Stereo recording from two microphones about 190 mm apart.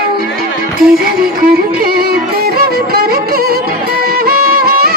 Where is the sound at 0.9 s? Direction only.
50° right (ahead or behind).